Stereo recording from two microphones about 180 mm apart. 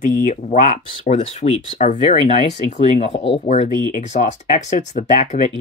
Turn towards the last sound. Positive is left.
turn(degrees=45)  # may be behind; listen again after turning